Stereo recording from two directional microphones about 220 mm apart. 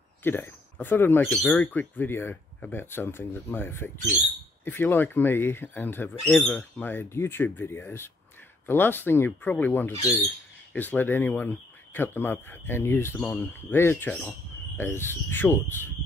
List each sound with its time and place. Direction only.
0.2 s speech: 10° left (ahead or behind)